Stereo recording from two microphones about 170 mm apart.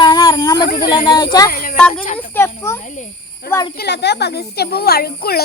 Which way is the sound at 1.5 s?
55° left (ahead or behind).